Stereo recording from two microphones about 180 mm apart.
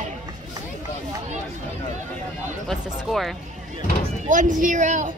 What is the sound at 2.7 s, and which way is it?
Speech, centre (ahead or behind).